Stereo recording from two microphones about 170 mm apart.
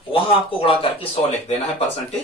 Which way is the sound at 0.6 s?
30° left (ahead or behind).